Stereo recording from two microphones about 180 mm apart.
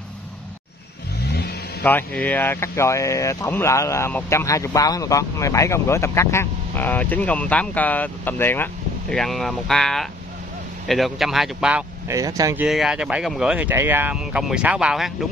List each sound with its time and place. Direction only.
1.2 s vehicle: 70° left (ahead or behind)
1.8 s speech: 5° left (ahead or behind)
12.1 s speech: 20° right (ahead or behind)
12.6 s speech: centre (ahead or behind)